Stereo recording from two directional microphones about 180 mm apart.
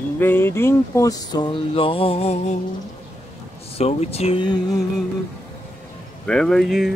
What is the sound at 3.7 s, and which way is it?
Speech, 35° left (ahead or behind).